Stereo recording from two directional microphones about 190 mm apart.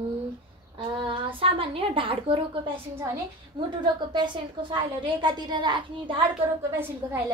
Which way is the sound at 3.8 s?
25° right (ahead or behind).